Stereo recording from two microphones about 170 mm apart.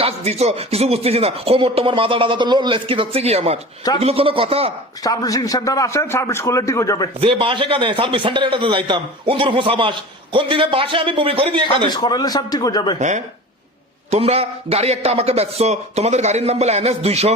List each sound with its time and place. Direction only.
0.0 s speech: 40° right (ahead or behind)
5.0 s a man's voice: 20° left (ahead or behind)
7.2 s a man's voice: 30° right (ahead or behind)
11.9 s a man's voice: 25° left (ahead or behind)
13.0 s speech: 45° right (ahead or behind)